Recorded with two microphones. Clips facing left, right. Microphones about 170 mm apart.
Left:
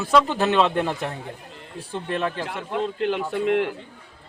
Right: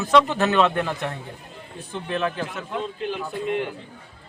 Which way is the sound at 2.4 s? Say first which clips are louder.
Left 3 dB; 80° left.